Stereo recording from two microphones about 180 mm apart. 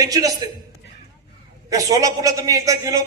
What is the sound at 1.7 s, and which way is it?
A man's voice, 20° right (ahead or behind).